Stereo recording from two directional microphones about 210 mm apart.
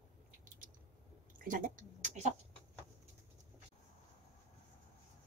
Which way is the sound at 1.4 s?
40° right (ahead or behind).